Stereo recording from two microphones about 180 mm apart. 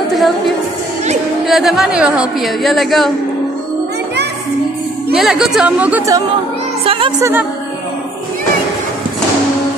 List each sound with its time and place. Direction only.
0.1 s a woman's voice: centre (ahead or behind)
5.1 s speech: centre (ahead or behind)
6.8 s speech: 30° right (ahead or behind)
7.2 s speech: 15° right (ahead or behind)